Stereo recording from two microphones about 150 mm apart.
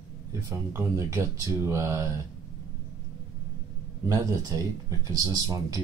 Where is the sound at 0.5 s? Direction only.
20° right (ahead or behind).